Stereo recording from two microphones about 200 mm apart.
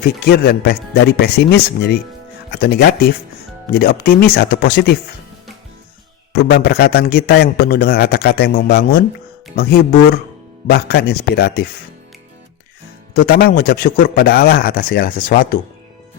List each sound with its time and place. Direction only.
0.3 s a man's voice: 50° left (ahead or behind)
6.3 s a man's voice: 55° left (ahead or behind)
10.7 s a man's voice: 55° left (ahead or behind)
13.1 s a man's voice: 50° left (ahead or behind)